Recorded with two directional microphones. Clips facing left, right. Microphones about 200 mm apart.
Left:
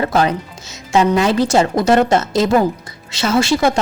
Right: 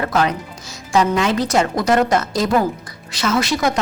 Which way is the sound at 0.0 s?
30° left (ahead or behind).